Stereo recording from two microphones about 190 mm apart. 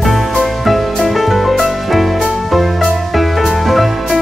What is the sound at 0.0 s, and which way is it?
Music, centre (ahead or behind).